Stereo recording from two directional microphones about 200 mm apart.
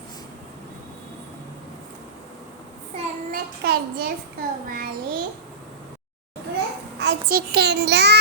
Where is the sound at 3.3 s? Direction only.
50° right (ahead or behind).